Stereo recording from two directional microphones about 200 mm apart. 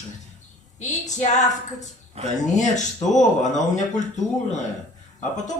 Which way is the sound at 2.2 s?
30° right (ahead or behind).